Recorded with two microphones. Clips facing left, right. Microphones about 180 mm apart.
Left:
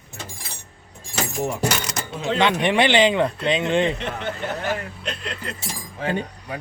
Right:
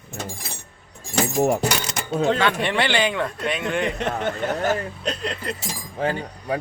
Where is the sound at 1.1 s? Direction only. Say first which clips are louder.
Right 6 dB; 50° right (ahead or behind).